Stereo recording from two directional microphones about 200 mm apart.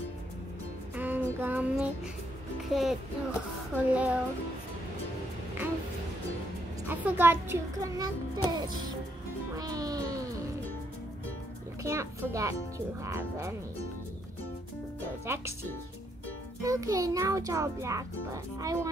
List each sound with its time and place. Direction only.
0.9 s music: 10° right (ahead or behind)
6.9 s a child's voice: 10° right (ahead or behind)
9.6 s music: 20° right (ahead or behind)
11.8 s a child's voice: 15° right (ahead or behind)
15.2 s a child's voice: 10° right (ahead or behind)
16.6 s a child's voice: 15° right (ahead or behind)